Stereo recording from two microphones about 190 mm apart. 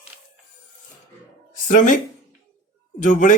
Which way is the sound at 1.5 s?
40° left (ahead or behind).